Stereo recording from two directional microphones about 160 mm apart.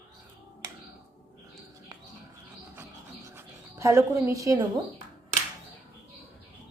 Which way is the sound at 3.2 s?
15° right (ahead or behind).